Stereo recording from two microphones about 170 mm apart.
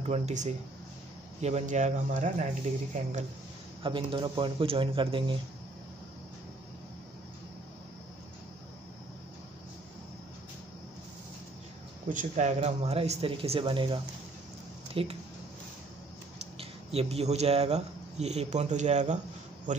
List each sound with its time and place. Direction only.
0.0 s speech: 40° right (ahead or behind)
3.8 s speech: 30° right (ahead or behind)
12.1 s speech: 45° right (ahead or behind)
16.5 s speech: 35° right (ahead or behind)